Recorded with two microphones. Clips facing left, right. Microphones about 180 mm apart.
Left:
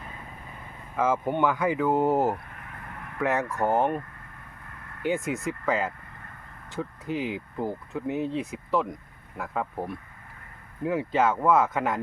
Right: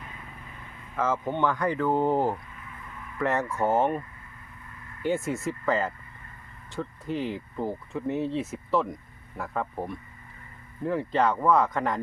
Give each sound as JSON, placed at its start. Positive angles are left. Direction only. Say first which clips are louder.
{"t": 0.9, "sound": "speech", "louder": "left 2 dB", "side_deg": 10}
{"t": 2.5, "sound": "a sound", "louder": "left 2 dB", "side_deg": 60}
{"t": 3.2, "sound": "speech", "louder": "even", "side_deg": 0}
{"t": 5.0, "sound": "speech", "louder": "even", "side_deg": 0}